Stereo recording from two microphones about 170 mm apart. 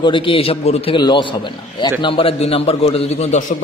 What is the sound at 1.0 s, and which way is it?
A man's voice, 25° left (ahead or behind).